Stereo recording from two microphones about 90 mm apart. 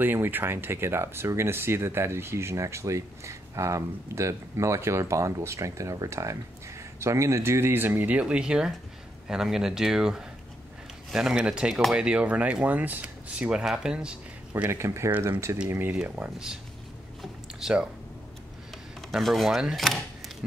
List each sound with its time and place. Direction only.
0.0 s speech: 25° right (ahead or behind)
14.7 s speech: 30° right (ahead or behind)
15.9 s speech: 15° right (ahead or behind)
17.2 s a sound: 5° right (ahead or behind)
18.9 s speech: centre (ahead or behind)